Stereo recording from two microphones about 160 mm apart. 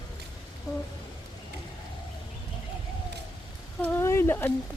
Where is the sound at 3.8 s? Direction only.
15° left (ahead or behind).